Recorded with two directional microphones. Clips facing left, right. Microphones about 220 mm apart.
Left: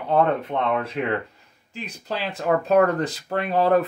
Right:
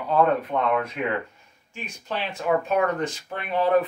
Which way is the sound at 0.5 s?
25° left (ahead or behind).